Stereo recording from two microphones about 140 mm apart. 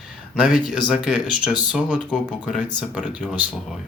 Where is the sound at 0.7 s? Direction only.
5° right (ahead or behind).